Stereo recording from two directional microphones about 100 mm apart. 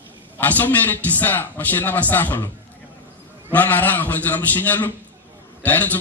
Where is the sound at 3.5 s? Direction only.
15° left (ahead or behind).